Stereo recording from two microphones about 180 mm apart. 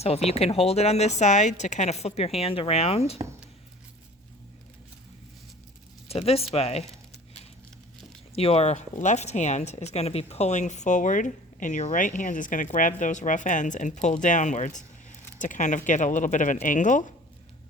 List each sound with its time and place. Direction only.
0.3 s a woman's voice: 35° left (ahead or behind)
6.1 s a woman's voice: 35° left (ahead or behind)
8.4 s speech: 35° left (ahead or behind)